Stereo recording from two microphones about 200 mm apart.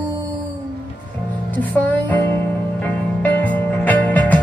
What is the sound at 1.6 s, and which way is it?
Music, 10° left (ahead or behind).